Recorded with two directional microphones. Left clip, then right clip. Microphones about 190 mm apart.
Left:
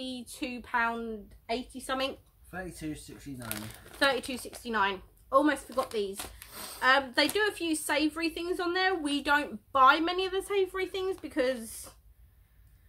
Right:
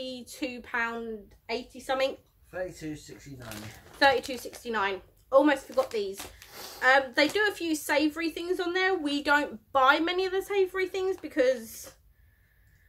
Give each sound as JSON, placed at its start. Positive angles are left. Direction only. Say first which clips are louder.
{"t": 0.0, "sound": "a woman's voice", "louder": "right 2 dB", "side_deg": 0}
{"t": 2.5, "sound": "speech", "louder": "right 4 dB", "side_deg": 40}
{"t": 4.0, "sound": "a woman's voice", "louder": "right 5 dB", "side_deg": 5}